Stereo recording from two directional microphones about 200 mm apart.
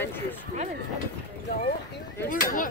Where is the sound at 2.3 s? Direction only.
40° left (ahead or behind).